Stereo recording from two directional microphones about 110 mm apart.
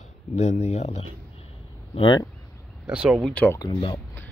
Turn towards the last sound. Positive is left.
turn(degrees=45)  # may be behind; listen again after turning